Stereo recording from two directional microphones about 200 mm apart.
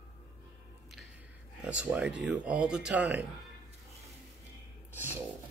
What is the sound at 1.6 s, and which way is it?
Speech, 5° right (ahead or behind).